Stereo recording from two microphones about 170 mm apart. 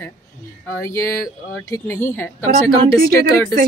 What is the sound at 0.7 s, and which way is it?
Speech, 15° left (ahead or behind).